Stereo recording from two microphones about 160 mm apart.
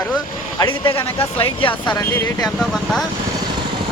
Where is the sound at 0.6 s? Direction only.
30° left (ahead or behind).